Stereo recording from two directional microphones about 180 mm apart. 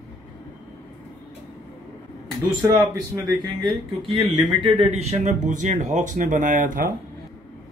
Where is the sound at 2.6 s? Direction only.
15° right (ahead or behind); by 6.9 s 50° right (ahead or behind).